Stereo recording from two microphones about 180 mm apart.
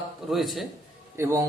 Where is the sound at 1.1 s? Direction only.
15° right (ahead or behind).